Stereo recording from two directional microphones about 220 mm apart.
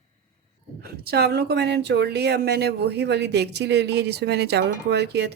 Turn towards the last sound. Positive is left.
turn(degrees=-50)  # may be behind; listen again after turning